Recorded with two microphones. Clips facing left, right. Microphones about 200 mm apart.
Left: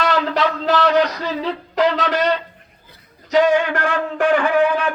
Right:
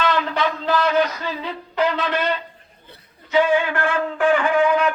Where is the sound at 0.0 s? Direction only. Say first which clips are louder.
Left 2 dB; 80° left.